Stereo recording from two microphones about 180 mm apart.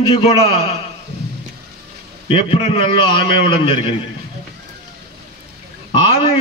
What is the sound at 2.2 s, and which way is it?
A man's voice, 30° left (ahead or behind).